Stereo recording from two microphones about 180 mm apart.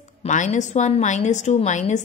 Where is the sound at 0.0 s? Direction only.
40° left (ahead or behind).